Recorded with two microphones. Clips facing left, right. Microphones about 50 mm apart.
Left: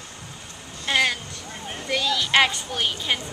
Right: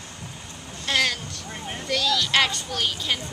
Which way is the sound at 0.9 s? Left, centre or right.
Centre.